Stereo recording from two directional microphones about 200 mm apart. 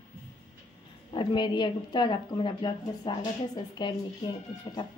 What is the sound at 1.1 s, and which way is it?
A woman's voice, 25° left (ahead or behind).